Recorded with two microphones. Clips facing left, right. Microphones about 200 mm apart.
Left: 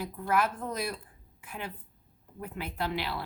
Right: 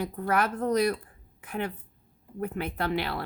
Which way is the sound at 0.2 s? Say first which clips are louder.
Right 2 dB; 65° right (ahead or behind).